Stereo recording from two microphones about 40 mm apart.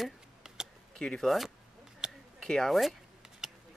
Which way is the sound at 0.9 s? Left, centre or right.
Centre.